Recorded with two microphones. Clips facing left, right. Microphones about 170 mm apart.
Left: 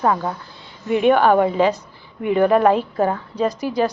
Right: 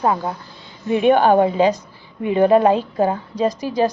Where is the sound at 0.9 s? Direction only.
30° right (ahead or behind).